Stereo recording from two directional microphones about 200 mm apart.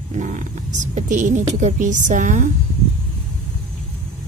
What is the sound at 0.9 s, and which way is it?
Speech, 40° right (ahead or behind).